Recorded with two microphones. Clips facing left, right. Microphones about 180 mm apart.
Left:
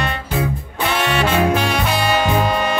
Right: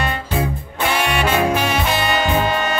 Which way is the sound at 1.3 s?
5° right (ahead or behind).